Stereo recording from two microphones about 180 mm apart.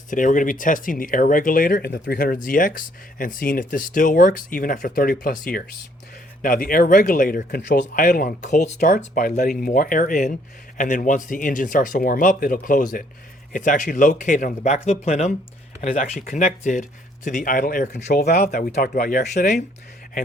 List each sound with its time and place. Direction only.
0.1 s speech: 45° left (ahead or behind)
6.4 s speech: 50° left (ahead or behind)